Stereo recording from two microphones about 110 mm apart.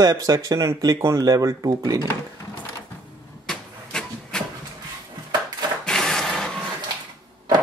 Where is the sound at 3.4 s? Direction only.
5° left (ahead or behind).